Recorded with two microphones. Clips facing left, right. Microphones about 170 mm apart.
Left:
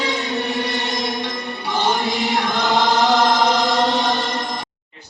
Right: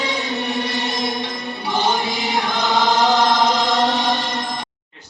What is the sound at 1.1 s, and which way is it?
Music, 20° right (ahead or behind).